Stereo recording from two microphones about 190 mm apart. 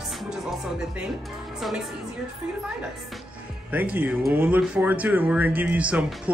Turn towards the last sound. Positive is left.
turn(degrees=-5)  # may be behind; listen again after turning